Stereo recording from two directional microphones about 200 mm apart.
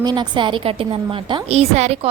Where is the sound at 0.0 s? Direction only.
20° right (ahead or behind).